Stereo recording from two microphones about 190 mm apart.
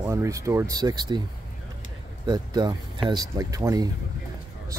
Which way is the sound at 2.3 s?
20° right (ahead or behind).